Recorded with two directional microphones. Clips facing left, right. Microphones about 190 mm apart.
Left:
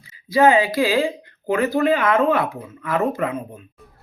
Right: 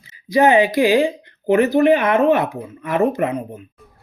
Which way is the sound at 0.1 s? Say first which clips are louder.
Right 1 dB; 20° right (ahead or behind).